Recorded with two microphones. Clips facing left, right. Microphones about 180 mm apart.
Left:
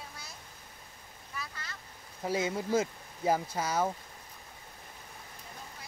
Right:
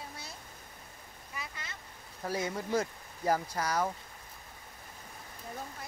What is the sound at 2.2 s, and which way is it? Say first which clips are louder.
Speech: left 3 dB; 20° left (ahead or behind).